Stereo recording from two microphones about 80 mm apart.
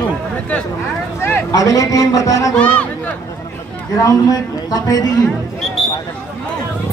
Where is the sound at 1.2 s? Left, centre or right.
Left.